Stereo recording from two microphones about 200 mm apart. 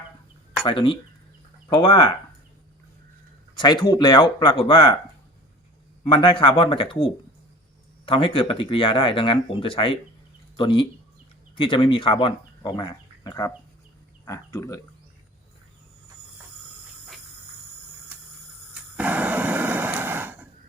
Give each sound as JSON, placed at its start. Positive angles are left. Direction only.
{"t": 0.6, "sound": "speech", "side_deg": 25}
{"t": 3.6, "sound": "speech", "side_deg": 20}
{"t": 6.1, "sound": "speech", "side_deg": 25}
{"t": 8.0, "sound": "speech", "side_deg": 25}
{"t": 18.7, "sound": "a sound", "side_deg": -5}